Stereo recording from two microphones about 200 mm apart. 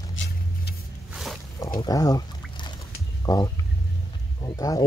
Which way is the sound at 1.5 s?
20° left (ahead or behind).